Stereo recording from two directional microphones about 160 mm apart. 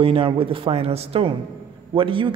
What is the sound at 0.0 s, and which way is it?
Speech, 35° right (ahead or behind).